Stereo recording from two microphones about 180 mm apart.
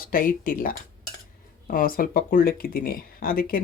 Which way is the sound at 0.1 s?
50° left (ahead or behind).